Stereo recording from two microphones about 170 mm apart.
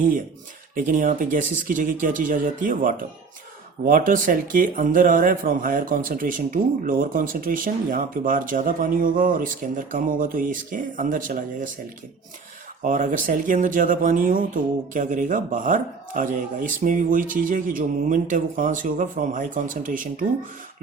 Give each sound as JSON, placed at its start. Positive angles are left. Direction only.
{"t": 0.8, "sound": "speech", "side_deg": -50}
{"t": 12.8, "sound": "speech", "side_deg": -50}